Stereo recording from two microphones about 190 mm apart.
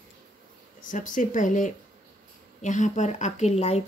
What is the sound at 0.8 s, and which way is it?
Speech, 45° left (ahead or behind).